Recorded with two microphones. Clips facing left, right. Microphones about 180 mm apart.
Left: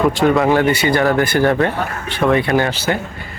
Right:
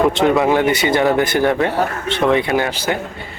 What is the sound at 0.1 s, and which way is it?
A man's voice, 20° right (ahead or behind).